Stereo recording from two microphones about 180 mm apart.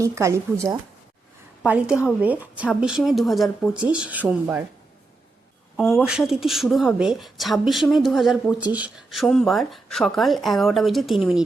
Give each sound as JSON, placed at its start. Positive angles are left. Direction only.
{"t": 0.0, "sound": "a woman's voice", "side_deg": -15}
{"t": 5.7, "sound": "a woman's voice", "side_deg": 0}